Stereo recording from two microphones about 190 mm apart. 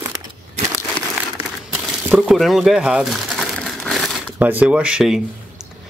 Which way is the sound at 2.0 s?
Centre (ahead or behind).